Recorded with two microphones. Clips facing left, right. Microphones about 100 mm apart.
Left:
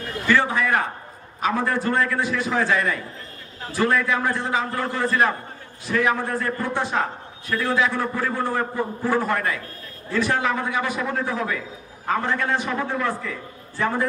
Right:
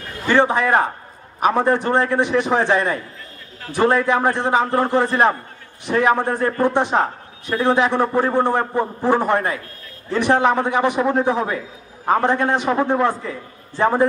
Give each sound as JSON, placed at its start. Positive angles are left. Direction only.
{"t": 0.3, "sound": "a man's voice", "side_deg": -25}